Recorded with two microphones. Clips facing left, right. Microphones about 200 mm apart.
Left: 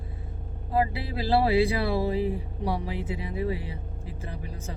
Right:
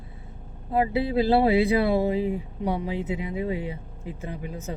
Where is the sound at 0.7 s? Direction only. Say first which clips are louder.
Right 5 dB; 20° right (ahead or behind).